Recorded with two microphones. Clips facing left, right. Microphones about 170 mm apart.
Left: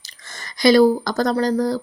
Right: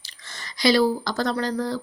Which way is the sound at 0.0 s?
45° left (ahead or behind).